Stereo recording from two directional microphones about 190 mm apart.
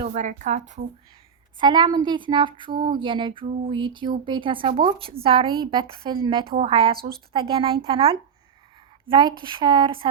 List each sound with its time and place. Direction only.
0.1 s a woman's voice: 40° right (ahead or behind)
1.5 s speech: 25° right (ahead or behind)